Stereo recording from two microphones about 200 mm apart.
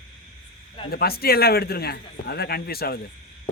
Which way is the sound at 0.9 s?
50° left (ahead or behind).